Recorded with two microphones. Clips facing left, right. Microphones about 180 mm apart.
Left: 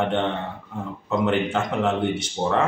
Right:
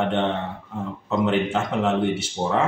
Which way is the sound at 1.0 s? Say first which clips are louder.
Even; centre (ahead or behind).